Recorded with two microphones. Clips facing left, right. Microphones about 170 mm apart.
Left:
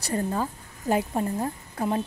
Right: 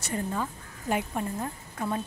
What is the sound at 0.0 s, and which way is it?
A woman's voice, 35° left (ahead or behind).